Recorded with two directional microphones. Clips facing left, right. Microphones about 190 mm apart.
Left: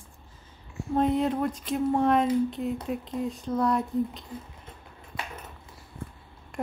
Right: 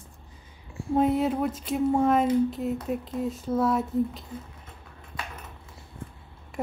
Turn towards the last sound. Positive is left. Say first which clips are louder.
# right 1 dB
turn(degrees=-5)  # may be behind; listen again after turning